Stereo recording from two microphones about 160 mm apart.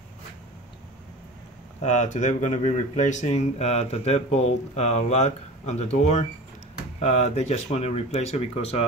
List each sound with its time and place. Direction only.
1.8 s speech: 45° left (ahead or behind)